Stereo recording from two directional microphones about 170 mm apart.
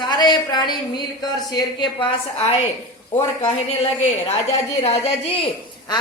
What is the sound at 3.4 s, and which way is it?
Speech, 35° left (ahead or behind).